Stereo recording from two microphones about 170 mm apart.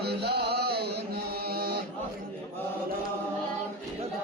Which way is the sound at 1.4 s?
65° right (ahead or behind).